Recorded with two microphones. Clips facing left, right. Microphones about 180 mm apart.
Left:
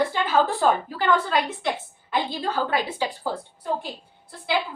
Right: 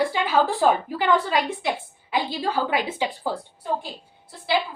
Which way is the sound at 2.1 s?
10° right (ahead or behind).